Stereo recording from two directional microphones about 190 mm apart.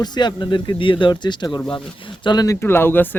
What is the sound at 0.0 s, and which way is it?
Speech, 20° left (ahead or behind).